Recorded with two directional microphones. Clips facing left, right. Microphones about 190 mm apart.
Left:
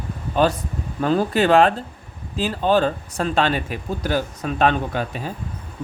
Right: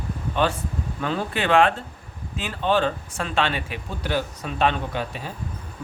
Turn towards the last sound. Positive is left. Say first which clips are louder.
# left 4 dB
turn(degrees=45)  # may be behind; listen again after turning